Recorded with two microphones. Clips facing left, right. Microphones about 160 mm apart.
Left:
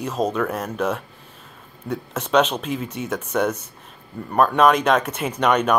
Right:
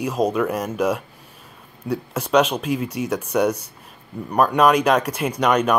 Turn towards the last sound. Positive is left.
turn(degrees=-5)  # may be behind; listen again after turning